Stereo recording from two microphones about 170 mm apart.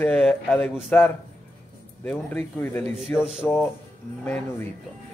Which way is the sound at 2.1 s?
10° left (ahead or behind).